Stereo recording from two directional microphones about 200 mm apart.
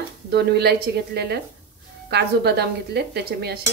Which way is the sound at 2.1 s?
55° right (ahead or behind).